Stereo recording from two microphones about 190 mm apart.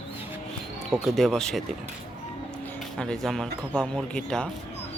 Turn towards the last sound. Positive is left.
turn(degrees=5)  # may be behind; listen again after turning